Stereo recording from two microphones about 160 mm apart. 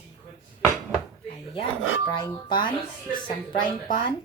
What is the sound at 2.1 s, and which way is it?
A woman's voice, 30° left (ahead or behind).